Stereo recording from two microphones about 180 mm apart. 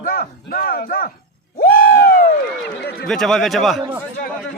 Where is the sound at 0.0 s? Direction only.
55° left (ahead or behind).